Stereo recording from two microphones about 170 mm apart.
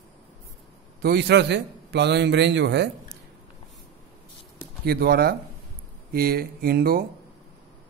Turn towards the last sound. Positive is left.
turn(degrees=-60)  # may be behind; listen again after turning